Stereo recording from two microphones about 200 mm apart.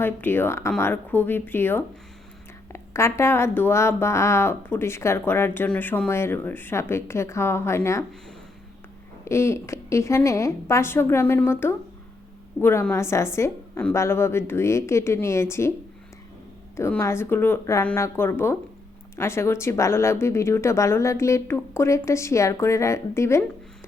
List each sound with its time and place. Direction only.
0.0 s speech: 10° left (ahead or behind)
9.2 s speech: 15° left (ahead or behind)
16.7 s speech: 15° left (ahead or behind)